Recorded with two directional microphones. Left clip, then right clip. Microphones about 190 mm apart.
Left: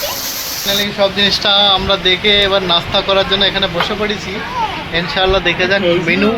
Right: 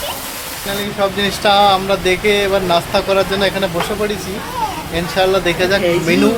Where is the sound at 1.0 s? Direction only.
10° right (ahead or behind).